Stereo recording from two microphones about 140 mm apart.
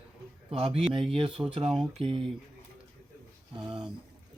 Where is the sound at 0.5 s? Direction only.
45° right (ahead or behind).